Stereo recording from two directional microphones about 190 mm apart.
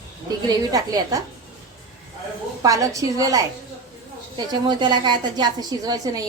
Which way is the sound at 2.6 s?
15° right (ahead or behind).